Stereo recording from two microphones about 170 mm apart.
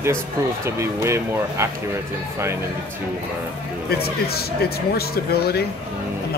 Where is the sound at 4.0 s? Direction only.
65° left (ahead or behind).